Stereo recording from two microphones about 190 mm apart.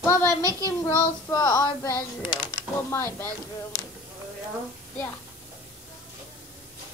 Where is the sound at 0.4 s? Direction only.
20° right (ahead or behind).